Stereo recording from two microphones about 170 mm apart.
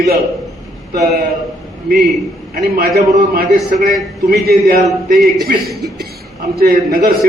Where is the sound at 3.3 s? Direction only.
65° right (ahead or behind).